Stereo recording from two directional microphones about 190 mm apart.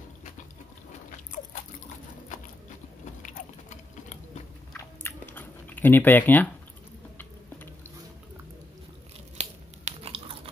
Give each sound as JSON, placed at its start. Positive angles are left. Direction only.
{"t": 1.3, "sound": "biting", "side_deg": 45}
{"t": 3.2, "sound": "a sound", "side_deg": 40}
{"t": 4.7, "sound": "chewing", "side_deg": 10}
{"t": 9.4, "sound": "tearing", "side_deg": -35}